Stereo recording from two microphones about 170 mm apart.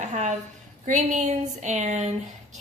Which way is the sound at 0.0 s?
45° right (ahead or behind).